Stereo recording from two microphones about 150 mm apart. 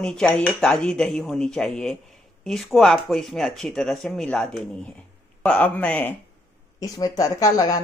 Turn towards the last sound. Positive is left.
turn(degrees=25)  # may be behind; listen again after turning